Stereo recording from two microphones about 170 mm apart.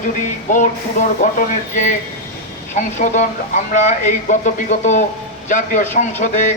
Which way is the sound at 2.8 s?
45° left (ahead or behind).